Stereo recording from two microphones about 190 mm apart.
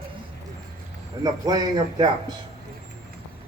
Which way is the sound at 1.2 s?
20° right (ahead or behind).